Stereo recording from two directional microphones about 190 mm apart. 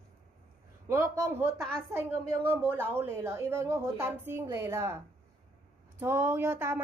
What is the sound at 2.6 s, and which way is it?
A woman's voice, 10° right (ahead or behind).